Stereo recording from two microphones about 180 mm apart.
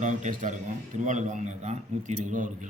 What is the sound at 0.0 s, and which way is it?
Speech, 40° right (ahead or behind).